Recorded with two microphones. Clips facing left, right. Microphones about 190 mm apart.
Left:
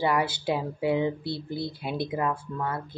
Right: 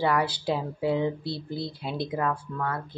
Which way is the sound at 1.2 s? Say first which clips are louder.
Left 1 dB; 55° left (ahead or behind).